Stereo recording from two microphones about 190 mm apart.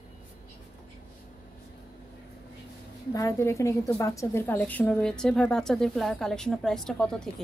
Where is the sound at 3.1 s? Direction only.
15° left (ahead or behind).